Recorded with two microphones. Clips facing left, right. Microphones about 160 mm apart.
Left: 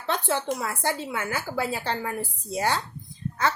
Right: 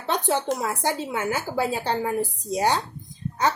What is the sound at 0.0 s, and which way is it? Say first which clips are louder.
A woman's voice: right 3 dB; 20° right (ahead or behind).